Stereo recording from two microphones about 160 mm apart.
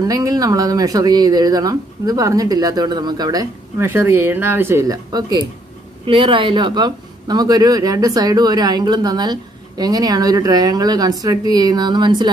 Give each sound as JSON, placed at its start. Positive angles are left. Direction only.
{"t": 0.0, "sound": "speech", "side_deg": -25}